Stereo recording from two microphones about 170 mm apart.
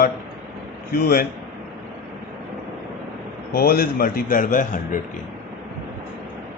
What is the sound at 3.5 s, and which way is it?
A man's voice, 60° left (ahead or behind).